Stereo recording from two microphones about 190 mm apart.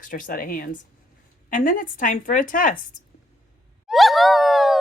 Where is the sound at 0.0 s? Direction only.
45° left (ahead or behind).